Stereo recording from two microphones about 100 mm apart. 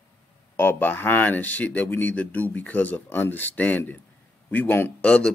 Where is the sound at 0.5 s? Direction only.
20° left (ahead or behind).